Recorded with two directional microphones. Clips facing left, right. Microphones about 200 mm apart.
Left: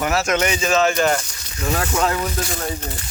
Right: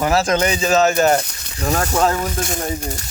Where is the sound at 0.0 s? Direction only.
35° right (ahead or behind).